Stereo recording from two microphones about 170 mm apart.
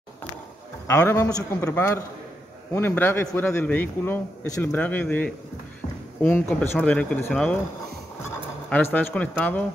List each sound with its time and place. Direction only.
0.8 s a man's voice: 15° left (ahead or behind)
8.6 s a man's voice: 10° left (ahead or behind)